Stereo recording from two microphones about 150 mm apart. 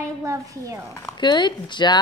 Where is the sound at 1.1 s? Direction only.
30° left (ahead or behind).